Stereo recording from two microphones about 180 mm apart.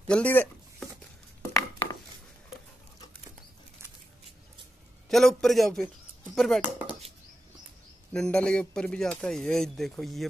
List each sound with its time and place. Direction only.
0.1 s speech: 10° left (ahead or behind)
1.5 s a sound: 20° left (ahead or behind)
5.1 s a man's voice: centre (ahead or behind)
8.1 s a man's voice: 5° left (ahead or behind)